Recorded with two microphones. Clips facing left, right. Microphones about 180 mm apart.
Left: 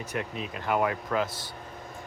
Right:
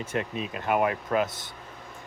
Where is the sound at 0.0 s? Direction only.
25° right (ahead or behind).